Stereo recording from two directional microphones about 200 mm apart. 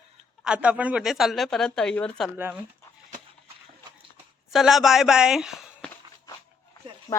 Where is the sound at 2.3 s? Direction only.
10° right (ahead or behind).